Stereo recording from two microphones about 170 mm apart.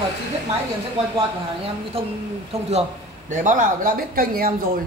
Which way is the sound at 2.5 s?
35° right (ahead or behind).